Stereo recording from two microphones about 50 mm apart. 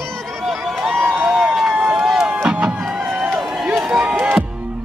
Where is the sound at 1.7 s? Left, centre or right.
Right.